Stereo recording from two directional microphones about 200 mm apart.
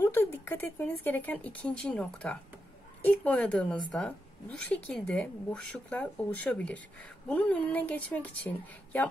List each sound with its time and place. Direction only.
0.0 s a woman's voice: 10° left (ahead or behind)